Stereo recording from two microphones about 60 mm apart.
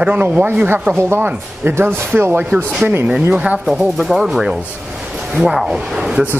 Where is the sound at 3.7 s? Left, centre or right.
Centre.